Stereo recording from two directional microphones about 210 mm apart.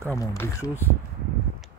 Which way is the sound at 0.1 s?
15° left (ahead or behind).